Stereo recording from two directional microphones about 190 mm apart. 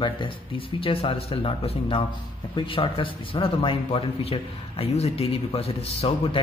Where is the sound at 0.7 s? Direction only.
30° left (ahead or behind).